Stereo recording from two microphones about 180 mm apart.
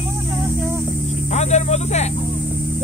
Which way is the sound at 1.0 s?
40° left (ahead or behind).